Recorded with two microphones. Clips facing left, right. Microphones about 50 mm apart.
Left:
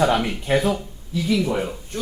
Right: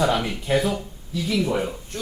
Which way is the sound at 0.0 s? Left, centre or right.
Left.